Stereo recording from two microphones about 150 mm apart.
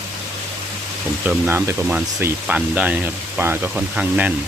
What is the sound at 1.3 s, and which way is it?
Speech, 15° right (ahead or behind).